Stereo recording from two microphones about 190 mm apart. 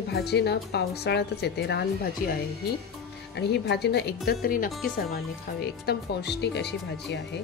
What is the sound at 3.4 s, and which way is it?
Speech, 65° left (ahead or behind).